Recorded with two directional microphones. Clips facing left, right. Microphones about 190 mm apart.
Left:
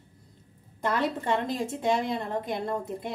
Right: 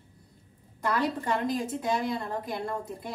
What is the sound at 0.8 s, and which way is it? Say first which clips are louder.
A woman's voice: left 1 dB; 25° left (ahead or behind).